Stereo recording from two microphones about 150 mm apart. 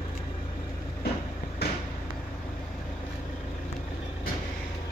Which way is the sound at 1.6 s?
90° left.